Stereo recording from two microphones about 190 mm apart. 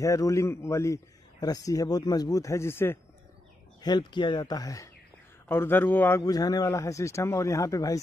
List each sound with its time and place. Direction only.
0.0 s a man's voice: 15° left (ahead or behind)
3.8 s a man's voice: 25° left (ahead or behind)